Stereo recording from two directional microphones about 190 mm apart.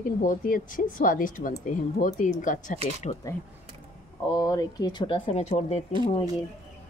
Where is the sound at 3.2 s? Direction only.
15° left (ahead or behind); by 5.8 s 35° left (ahead or behind).